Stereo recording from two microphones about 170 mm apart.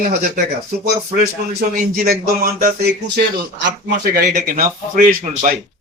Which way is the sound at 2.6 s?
70° right (ahead or behind).